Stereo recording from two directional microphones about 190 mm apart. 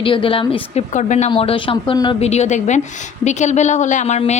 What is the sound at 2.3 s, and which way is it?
A woman's voice, 35° left (ahead or behind).